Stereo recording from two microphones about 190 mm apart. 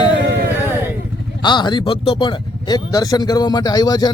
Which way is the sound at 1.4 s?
25° left (ahead or behind).